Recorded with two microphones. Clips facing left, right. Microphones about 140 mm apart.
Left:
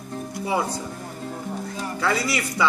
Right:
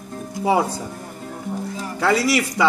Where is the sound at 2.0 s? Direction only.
90° right.